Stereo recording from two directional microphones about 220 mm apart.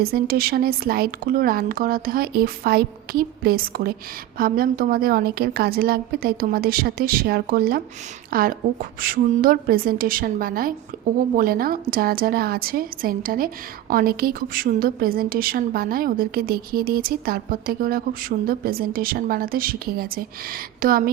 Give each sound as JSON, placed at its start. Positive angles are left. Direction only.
{"t": 0.0, "sound": "a woman's voice", "side_deg": -45}